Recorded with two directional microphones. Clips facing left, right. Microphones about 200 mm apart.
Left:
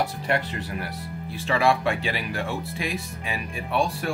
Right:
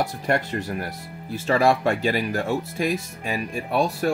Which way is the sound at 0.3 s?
45° right (ahead or behind).